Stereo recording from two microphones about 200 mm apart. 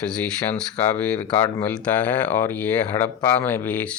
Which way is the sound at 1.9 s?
10° left (ahead or behind).